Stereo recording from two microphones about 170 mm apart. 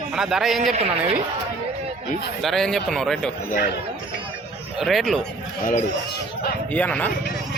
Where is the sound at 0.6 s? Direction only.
40° right (ahead or behind).